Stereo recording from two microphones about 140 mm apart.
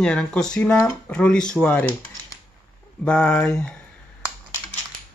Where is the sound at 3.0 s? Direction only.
10° left (ahead or behind).